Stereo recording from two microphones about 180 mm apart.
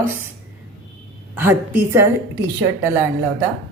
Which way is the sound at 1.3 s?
10° right (ahead or behind).